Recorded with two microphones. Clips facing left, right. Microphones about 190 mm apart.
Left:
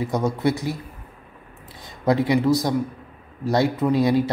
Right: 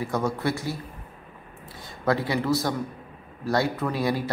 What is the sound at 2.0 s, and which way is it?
Speech, 15° left (ahead or behind).